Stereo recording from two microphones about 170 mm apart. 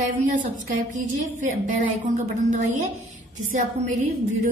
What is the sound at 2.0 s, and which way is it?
A woman's voice, 45° right (ahead or behind).